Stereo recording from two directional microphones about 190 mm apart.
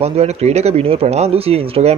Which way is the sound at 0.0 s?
35° right (ahead or behind).